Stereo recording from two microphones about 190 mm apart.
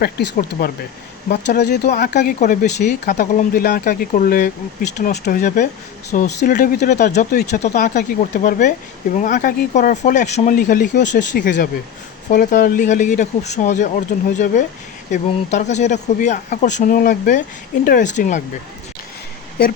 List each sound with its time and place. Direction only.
0.0 s speech: 55° left (ahead or behind)
1.9 s speech: 40° left (ahead or behind)
5.4 s speech: 40° left (ahead or behind)
7.6 s speech: 40° left (ahead or behind)
10.5 s speech: 50° left (ahead or behind)